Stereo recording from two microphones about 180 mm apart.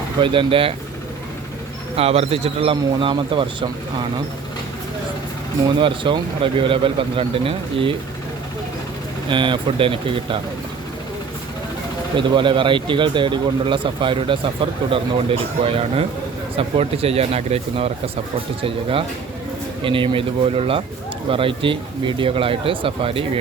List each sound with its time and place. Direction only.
0.2 s speech: 30° right (ahead or behind)
2.0 s speech: 35° right (ahead or behind)
5.6 s speech: 25° right (ahead or behind)
9.3 s speech: 25° right (ahead or behind)
12.1 s speech: 25° right (ahead or behind)